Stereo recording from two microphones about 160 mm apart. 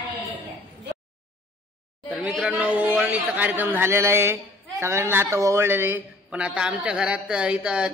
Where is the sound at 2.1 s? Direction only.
Centre (ahead or behind).